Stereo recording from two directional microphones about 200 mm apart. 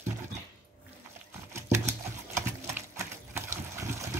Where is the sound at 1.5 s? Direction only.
15° right (ahead or behind).